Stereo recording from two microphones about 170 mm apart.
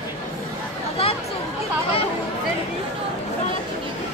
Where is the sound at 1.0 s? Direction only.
35° left (ahead or behind).